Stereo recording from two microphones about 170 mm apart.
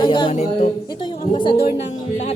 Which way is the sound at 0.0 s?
30° left (ahead or behind).